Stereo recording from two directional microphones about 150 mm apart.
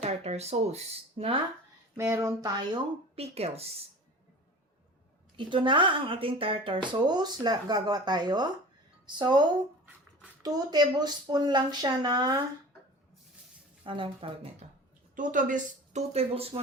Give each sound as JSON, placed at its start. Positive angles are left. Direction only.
{"t": 0.0, "sound": "speech", "side_deg": -45}
{"t": 2.0, "sound": "speech", "side_deg": -20}
{"t": 3.2, "sound": "speech", "side_deg": -45}
{"t": 5.4, "sound": "speech", "side_deg": -35}
{"t": 10.4, "sound": "speech", "side_deg": -25}
{"t": 13.8, "sound": "a woman's voice", "side_deg": -35}
{"t": 15.1, "sound": "speech", "side_deg": -60}